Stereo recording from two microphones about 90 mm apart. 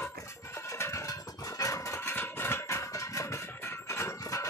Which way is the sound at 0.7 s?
30° left (ahead or behind).